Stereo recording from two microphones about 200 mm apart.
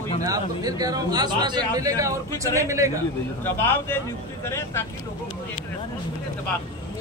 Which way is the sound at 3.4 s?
10° left (ahead or behind).